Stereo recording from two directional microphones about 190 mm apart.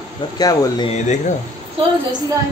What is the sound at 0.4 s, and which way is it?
Speech, 20° left (ahead or behind).